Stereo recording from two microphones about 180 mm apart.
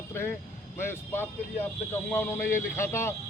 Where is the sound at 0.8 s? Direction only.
15° left (ahead or behind).